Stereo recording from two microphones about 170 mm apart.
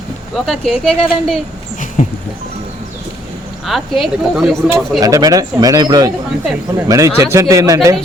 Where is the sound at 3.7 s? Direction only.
Centre (ahead or behind).